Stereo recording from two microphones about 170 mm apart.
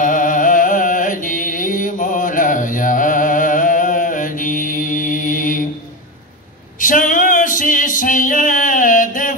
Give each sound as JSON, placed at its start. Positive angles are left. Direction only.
{"t": 0.0, "sound": "music", "side_deg": 50}
{"t": 6.8, "sound": "singing", "side_deg": 50}